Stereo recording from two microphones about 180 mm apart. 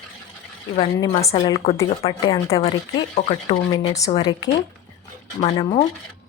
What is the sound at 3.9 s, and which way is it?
Speech, 20° left (ahead or behind).